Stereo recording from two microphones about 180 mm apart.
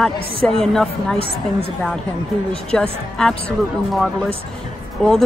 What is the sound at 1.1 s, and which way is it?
Speech, 30° right (ahead or behind).